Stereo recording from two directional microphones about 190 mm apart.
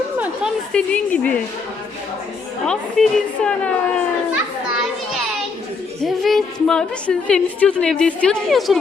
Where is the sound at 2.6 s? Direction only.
5° left (ahead or behind).